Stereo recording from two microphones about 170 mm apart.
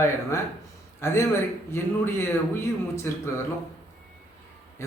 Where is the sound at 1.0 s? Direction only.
15° left (ahead or behind).